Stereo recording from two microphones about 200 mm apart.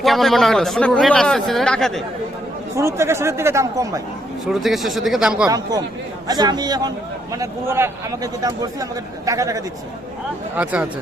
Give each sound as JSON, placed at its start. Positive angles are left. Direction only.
{"t": 0.0, "sound": "speech", "side_deg": 0}
{"t": 2.7, "sound": "a man's voice", "side_deg": -15}
{"t": 4.6, "sound": "speech", "side_deg": 0}
{"t": 5.5, "sound": "a man's voice", "side_deg": -20}
{"t": 10.6, "sound": "a man's voice", "side_deg": -5}